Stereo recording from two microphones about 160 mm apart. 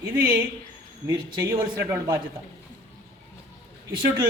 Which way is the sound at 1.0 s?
30° right (ahead or behind).